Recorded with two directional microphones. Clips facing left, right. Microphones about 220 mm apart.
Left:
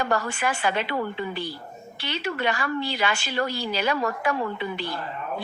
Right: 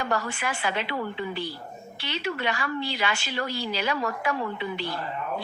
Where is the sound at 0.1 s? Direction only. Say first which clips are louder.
Left 3 dB; 45° left (ahead or behind).